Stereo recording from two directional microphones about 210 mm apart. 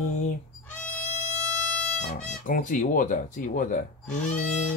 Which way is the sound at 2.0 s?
35° left (ahead or behind).